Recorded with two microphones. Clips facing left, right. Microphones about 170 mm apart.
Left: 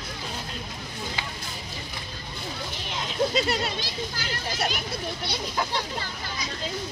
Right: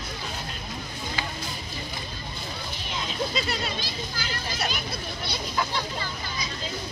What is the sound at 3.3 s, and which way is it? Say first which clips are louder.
Speech: left 4 dB; 75° left (ahead or behind).